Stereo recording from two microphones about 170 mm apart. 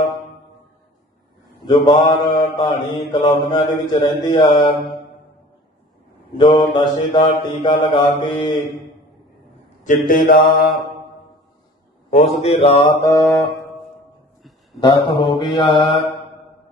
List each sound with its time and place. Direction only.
1.7 s mantra: 30° left (ahead or behind)
6.3 s mantra: 25° left (ahead or behind)
10.0 s mantra: 55° left (ahead or behind)
12.4 s mantra: 35° left (ahead or behind)
13.0 s mantra: 20° left (ahead or behind)
14.8 s mantra: 25° left (ahead or behind)